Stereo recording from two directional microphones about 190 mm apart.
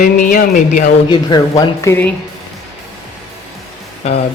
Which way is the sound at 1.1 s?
25° left (ahead or behind).